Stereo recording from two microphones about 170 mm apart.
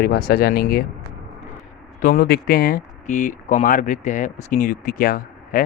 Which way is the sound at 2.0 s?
55° left (ahead or behind).